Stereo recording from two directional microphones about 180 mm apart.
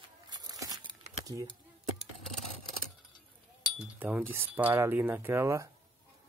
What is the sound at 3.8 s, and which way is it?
Speech, 10° right (ahead or behind).